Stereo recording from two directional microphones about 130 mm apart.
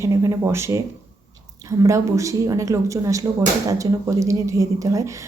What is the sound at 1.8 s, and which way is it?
A woman's voice, 25° right (ahead or behind).